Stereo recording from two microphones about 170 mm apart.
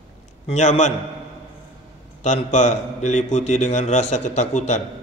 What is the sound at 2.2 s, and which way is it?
A man's voice, 45° left (ahead or behind).